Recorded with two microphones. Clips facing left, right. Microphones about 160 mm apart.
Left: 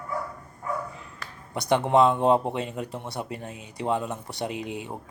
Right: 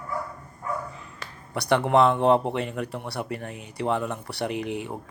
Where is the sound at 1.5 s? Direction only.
20° left (ahead or behind).